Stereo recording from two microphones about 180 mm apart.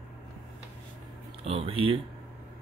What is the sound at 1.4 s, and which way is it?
Speech, 30° right (ahead or behind).